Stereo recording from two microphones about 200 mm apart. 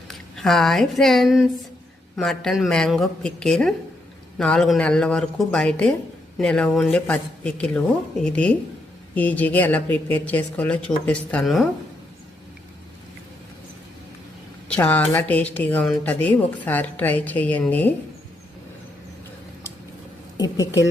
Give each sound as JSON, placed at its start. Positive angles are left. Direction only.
{"t": 0.1, "sound": "a woman's voice", "side_deg": 0}
{"t": 14.7, "sound": "speech", "side_deg": 10}
{"t": 20.3, "sound": "a woman's voice", "side_deg": 20}